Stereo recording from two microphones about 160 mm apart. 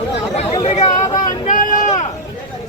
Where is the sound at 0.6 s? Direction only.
45° left (ahead or behind).